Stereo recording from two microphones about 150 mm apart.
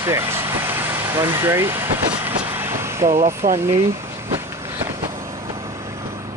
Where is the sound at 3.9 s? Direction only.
20° right (ahead or behind).